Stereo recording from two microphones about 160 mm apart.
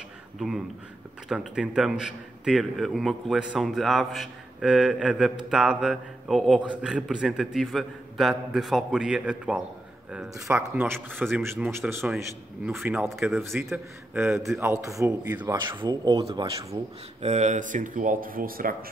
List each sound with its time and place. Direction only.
0.4 s a man's voice: centre (ahead or behind)
10.3 s speech: 15° right (ahead or behind)
12.6 s a man's voice: 5° right (ahead or behind)
14.6 s speech: 15° right (ahead or behind)
15.5 s speech: 30° right (ahead or behind)
17.2 s speech: 45° right (ahead or behind); by 18.9 s 65° right (ahead or behind)